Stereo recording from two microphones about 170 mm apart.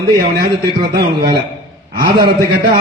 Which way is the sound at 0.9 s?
65° right (ahead or behind).